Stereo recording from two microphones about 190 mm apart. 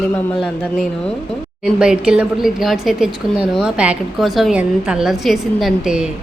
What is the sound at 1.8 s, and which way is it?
A woman's voice, 5° right (ahead or behind).